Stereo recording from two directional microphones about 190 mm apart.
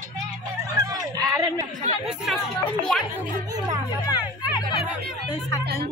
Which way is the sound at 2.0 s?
Centre (ahead or behind).